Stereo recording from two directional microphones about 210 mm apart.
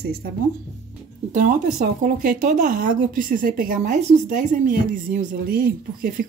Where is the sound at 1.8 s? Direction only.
40° right (ahead or behind).